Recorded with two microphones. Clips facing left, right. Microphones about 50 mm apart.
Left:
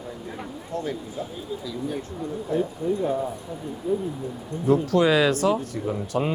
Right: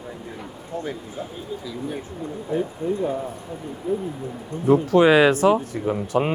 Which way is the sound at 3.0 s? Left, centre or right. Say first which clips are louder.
Left 1 dB; centre.